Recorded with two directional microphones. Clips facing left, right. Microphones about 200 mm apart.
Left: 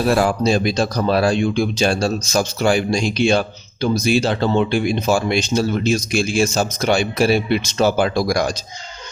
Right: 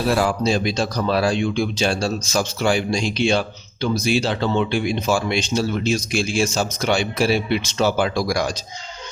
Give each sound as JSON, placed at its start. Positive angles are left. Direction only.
{"t": 0.1, "sound": "speech", "side_deg": 50}